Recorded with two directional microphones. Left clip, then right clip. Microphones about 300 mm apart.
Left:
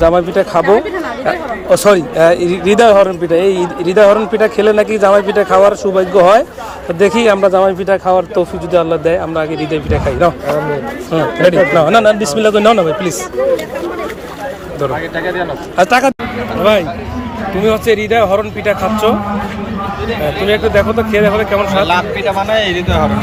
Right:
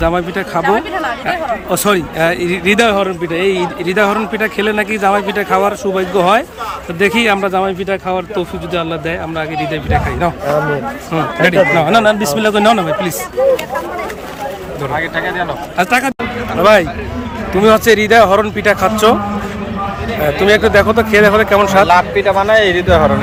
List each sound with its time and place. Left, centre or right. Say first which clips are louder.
0.0 s a man's voice: left 5 dB; centre
1.7 s speech: left 7 dB; centre
11.8 s a man's voice: left 2 dB; centre
15.4 s a man's voice: left 3 dB; centre
20.4 s a man's voice: right 3 dB; centre